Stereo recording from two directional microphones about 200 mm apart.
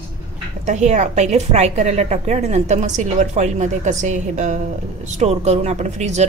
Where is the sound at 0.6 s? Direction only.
35° right (ahead or behind).